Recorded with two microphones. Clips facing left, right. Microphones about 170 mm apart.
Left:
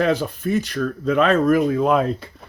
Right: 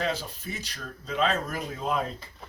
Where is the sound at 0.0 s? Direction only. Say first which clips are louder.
Left 11 dB; 60° left (ahead or behind).